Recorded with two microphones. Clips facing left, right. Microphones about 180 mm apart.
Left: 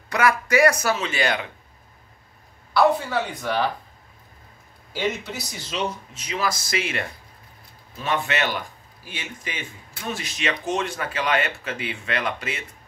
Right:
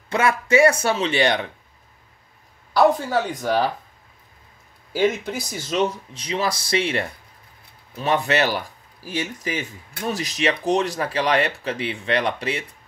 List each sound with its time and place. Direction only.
0.1 s speech: 25° right (ahead or behind)
2.7 s speech: 45° right (ahead or behind)
4.9 s speech: 50° right (ahead or behind)
5.6 s speech: 40° right (ahead or behind)
8.3 s speech: 35° right (ahead or behind)